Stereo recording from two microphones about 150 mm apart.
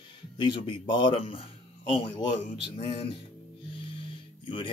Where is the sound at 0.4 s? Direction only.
30° left (ahead or behind).